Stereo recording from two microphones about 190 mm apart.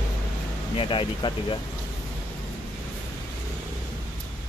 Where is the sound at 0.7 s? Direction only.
25° left (ahead or behind).